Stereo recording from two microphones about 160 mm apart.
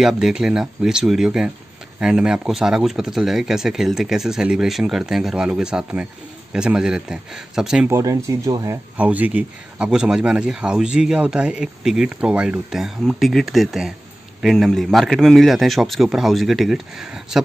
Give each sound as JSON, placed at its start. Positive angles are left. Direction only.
{"t": 0.0, "sound": "speech", "side_deg": -5}
{"t": 7.9, "sound": "speech", "side_deg": -20}
{"t": 8.9, "sound": "speech", "side_deg": -10}